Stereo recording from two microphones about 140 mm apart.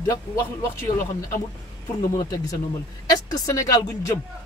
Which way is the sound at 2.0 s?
30° left (ahead or behind).